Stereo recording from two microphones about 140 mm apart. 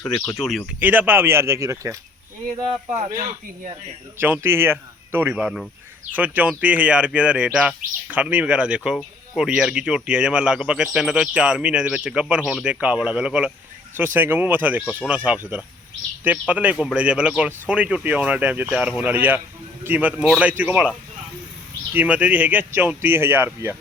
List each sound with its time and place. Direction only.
0.7 s speech: 10° right (ahead or behind)
2.9 s speech: 60° right (ahead or behind)
4.2 s speech: 15° right (ahead or behind)
21.9 s speech: 10° right (ahead or behind)